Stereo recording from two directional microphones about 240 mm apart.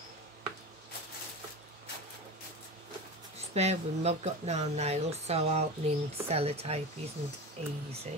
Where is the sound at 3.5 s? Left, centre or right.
Right.